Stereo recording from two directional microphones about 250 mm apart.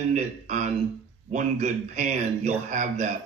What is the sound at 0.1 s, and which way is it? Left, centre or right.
A man's voice, right.